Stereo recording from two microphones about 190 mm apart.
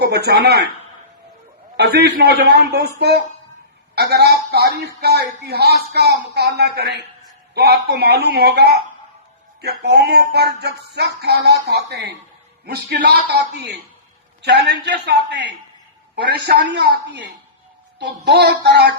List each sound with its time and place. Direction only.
0.0 s speech: 60° right (ahead or behind)
1.7 s music: 60° right (ahead or behind)
3.9 s music: 60° right (ahead or behind)